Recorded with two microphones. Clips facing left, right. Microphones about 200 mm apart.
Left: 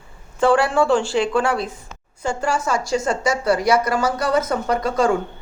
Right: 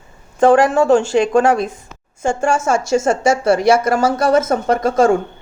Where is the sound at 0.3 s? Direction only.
40° right (ahead or behind).